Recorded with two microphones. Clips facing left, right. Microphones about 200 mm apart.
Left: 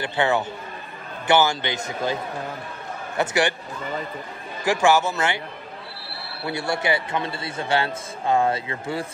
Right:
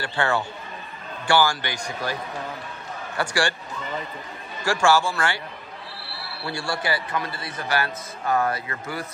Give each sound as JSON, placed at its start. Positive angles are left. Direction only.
{"t": 0.0, "sound": "a man's voice", "side_deg": 20}
{"t": 3.2, "sound": "a man's voice", "side_deg": 20}
{"t": 4.6, "sound": "a man's voice", "side_deg": 20}
{"t": 6.4, "sound": "a man's voice", "side_deg": 20}